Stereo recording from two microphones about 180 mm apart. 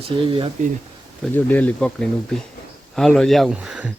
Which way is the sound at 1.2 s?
10° left (ahead or behind).